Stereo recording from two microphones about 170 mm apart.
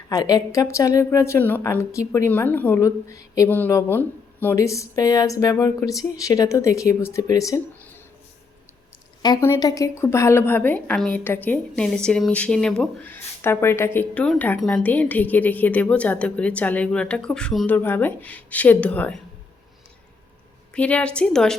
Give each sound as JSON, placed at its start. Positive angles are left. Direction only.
{"t": 0.1, "sound": "a woman's voice", "side_deg": 20}
{"t": 9.2, "sound": "a woman's voice", "side_deg": 20}
{"t": 20.7, "sound": "a woman's voice", "side_deg": 5}